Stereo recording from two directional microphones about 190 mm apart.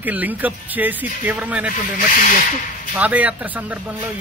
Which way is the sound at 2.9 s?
10° right (ahead or behind).